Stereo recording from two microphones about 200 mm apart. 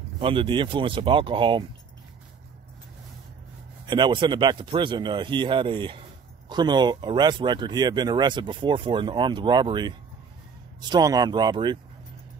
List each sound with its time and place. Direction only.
0.2 s speech: 25° right (ahead or behind)
3.8 s speech: 20° right (ahead or behind)